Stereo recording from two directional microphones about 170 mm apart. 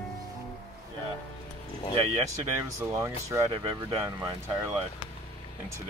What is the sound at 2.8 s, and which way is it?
Speech, 15° right (ahead or behind).